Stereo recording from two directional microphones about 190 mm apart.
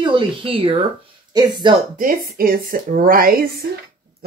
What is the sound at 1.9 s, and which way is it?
Speech, 50° right (ahead or behind).